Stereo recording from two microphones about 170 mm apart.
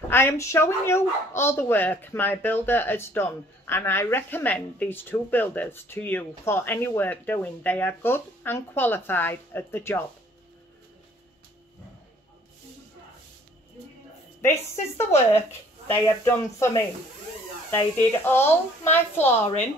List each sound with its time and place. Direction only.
0.1 s speech: 15° left (ahead or behind)
14.4 s speech: 15° left (ahead or behind)